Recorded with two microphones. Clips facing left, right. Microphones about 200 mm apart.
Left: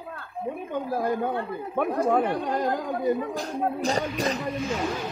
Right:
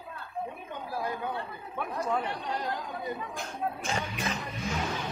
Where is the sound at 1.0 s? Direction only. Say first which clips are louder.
Left 6 dB; 45° left (ahead or behind).